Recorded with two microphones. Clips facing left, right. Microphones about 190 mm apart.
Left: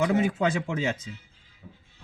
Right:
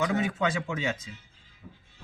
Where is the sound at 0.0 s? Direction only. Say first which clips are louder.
Left 4 dB; 30° left (ahead or behind).